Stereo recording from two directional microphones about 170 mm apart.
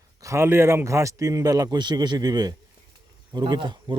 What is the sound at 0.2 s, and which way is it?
A man's voice, 15° right (ahead or behind).